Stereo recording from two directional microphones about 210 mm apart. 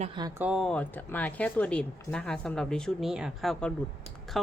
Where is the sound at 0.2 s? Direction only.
15° right (ahead or behind).